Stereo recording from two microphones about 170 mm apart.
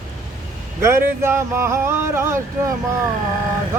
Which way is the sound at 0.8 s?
15° right (ahead or behind).